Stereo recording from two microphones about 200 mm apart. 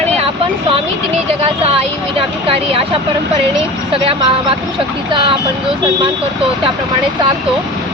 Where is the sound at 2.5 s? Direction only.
30° right (ahead or behind).